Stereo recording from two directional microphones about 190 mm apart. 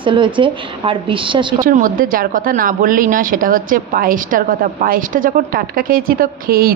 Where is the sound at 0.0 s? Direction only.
25° right (ahead or behind).